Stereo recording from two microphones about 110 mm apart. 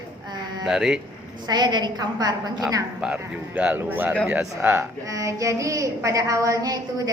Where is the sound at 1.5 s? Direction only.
40° right (ahead or behind).